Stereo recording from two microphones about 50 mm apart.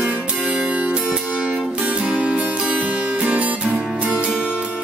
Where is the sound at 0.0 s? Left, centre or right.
Right.